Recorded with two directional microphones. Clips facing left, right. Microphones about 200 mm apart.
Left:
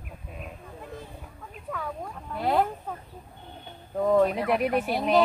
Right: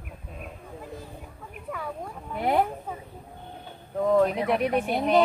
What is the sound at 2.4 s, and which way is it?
Speech, 15° right (ahead or behind).